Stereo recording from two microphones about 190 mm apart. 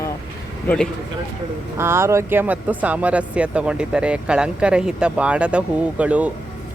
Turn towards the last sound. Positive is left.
turn(degrees=-5)  # may be behind; listen again after turning